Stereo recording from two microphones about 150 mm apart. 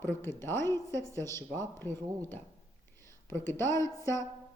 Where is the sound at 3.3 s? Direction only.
15° left (ahead or behind).